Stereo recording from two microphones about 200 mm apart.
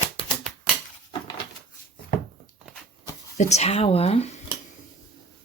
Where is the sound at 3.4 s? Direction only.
35° left (ahead or behind).